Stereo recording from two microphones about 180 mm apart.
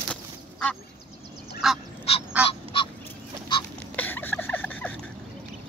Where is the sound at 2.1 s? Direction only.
35° left (ahead or behind).